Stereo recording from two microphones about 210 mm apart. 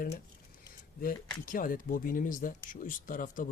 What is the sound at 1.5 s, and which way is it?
Speech, 40° left (ahead or behind).